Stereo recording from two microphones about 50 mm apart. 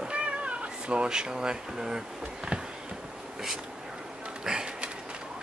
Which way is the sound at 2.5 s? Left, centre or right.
Right.